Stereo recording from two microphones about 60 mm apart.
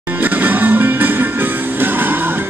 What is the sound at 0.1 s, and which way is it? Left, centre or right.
Music, right.